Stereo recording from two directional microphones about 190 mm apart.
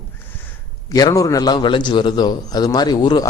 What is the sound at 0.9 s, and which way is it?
A man's voice, 20° left (ahead or behind).